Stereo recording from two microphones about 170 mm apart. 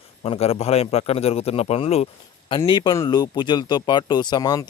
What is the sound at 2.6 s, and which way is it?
Speech, 25° left (ahead or behind).